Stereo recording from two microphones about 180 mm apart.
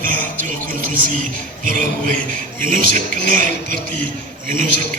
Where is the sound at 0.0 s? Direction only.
50° right (ahead or behind).